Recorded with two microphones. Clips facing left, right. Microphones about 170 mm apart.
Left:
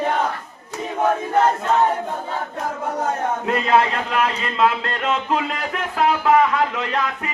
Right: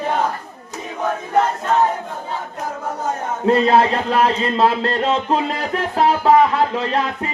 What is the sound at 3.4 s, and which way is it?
A man's voice, 35° right (ahead or behind).